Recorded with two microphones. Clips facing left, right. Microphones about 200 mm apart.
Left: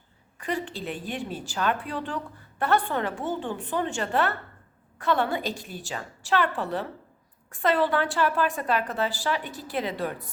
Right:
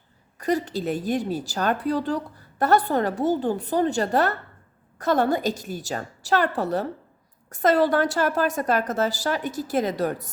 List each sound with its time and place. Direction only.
0.3 s a woman's voice: 40° right (ahead or behind)